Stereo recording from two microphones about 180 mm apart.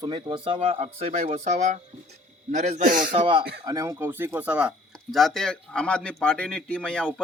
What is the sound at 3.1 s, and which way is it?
Speech, 30° right (ahead or behind).